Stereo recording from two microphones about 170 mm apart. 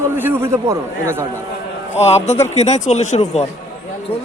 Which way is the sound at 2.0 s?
40° left (ahead or behind).